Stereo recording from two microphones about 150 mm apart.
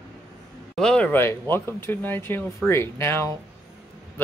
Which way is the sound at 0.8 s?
5° left (ahead or behind).